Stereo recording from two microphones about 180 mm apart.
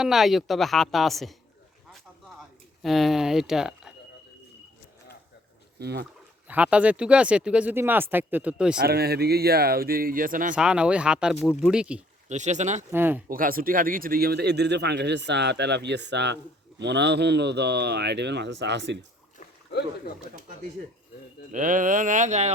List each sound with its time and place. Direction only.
0.0 s speech: centre (ahead or behind)
2.8 s speech: centre (ahead or behind)
5.8 s speech: 65° right (ahead or behind)
6.5 s speech: 5° right (ahead or behind)
8.8 s speech: 60° right (ahead or behind)
10.5 s speech: 5° right (ahead or behind)
12.3 s speech: 40° right (ahead or behind)
12.9 s speech: 10° right (ahead or behind)
13.2 s speech: 50° right (ahead or behind); by 18.9 s 75° right (ahead or behind)
21.5 s speech: 45° right (ahead or behind)